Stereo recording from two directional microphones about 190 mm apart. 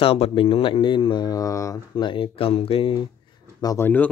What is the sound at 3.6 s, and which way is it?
Speech, 15° left (ahead or behind).